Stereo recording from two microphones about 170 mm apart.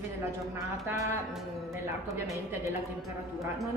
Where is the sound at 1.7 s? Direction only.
20° right (ahead or behind).